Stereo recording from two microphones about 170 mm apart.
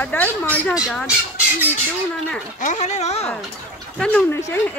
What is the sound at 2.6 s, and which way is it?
Speech, 45° left (ahead or behind).